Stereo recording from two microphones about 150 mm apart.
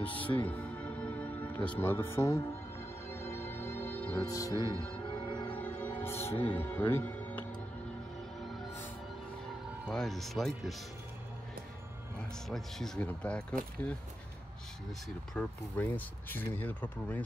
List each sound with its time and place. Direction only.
0.0 s music: 10° left (ahead or behind)
1.8 s speech: 15° left (ahead or behind)
3.1 s music: 15° left (ahead or behind)
4.2 s music: 20° left (ahead or behind)
5.5 s music: 10° left (ahead or behind)
6.5 s speech: 15° left (ahead or behind)
9.8 s speech: 5° left (ahead or behind)
12.4 s speech: centre (ahead or behind)
15.3 s speech: 10° left (ahead or behind)